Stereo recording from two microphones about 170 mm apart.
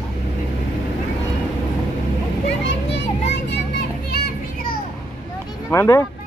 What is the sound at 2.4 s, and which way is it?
Children playing, 90° left.